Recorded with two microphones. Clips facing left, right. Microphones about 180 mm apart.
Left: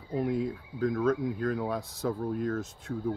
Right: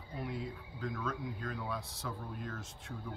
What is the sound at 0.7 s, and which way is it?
Speech, 45° left (ahead or behind).